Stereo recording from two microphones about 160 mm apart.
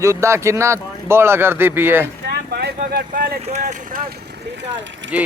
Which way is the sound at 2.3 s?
85° right.